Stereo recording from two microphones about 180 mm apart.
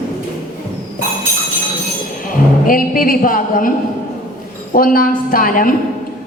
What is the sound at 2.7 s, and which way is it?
Speech, 50° left (ahead or behind).